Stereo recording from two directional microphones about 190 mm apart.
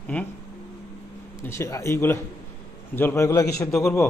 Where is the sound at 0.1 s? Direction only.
10° left (ahead or behind).